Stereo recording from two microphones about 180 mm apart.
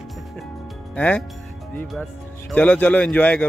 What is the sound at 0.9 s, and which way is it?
Speech, 10° left (ahead or behind).